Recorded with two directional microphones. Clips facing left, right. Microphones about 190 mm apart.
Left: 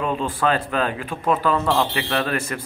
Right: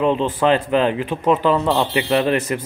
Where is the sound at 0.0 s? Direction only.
20° right (ahead or behind).